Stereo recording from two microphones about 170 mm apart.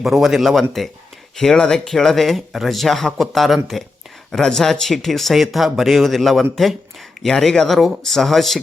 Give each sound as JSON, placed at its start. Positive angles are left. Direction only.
{"t": 0.0, "sound": "speech", "side_deg": 0}